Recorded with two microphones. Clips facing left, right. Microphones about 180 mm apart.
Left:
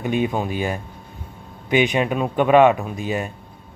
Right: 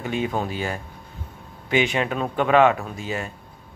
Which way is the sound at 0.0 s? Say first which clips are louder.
Left 4 dB; 15° left (ahead or behind).